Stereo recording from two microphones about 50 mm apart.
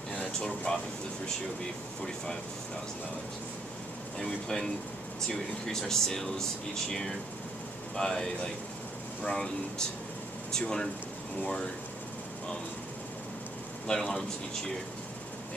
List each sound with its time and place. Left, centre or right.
0.4 s speech: centre
4.2 s speech: centre
13.9 s speech: centre